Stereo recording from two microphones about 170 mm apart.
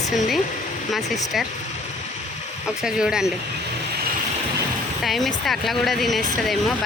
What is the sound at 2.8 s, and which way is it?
Speech, 5° right (ahead or behind).